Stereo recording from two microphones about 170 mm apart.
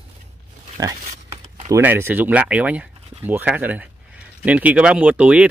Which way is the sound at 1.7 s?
15° right (ahead or behind).